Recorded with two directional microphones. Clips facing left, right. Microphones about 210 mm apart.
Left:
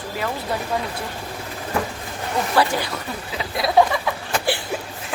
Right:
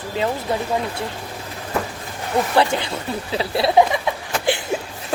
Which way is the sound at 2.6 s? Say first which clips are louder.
Left 1 dB; 25° right (ahead or behind).